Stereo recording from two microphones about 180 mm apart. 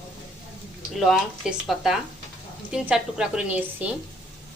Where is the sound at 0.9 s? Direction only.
Centre (ahead or behind).